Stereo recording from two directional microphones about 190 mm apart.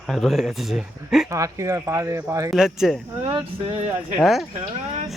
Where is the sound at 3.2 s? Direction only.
30° right (ahead or behind).